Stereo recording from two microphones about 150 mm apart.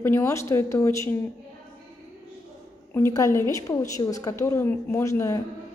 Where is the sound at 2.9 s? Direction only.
15° left (ahead or behind).